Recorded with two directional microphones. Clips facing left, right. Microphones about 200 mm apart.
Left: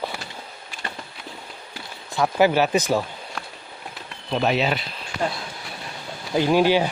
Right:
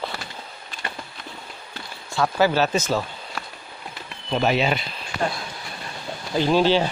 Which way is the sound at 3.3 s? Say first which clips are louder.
Right 1 dB; centre (ahead or behind).